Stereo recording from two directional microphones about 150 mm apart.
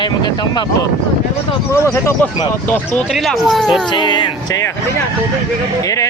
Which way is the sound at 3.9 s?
30° left (ahead or behind).